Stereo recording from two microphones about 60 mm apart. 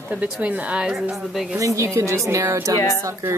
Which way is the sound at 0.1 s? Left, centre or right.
Right.